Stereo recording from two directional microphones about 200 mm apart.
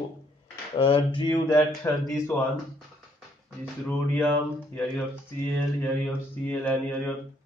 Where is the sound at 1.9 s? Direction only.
15° left (ahead or behind).